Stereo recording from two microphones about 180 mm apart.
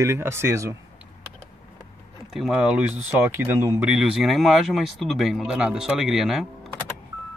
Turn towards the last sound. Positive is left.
turn(degrees=0)  # may be behind; listen again after turning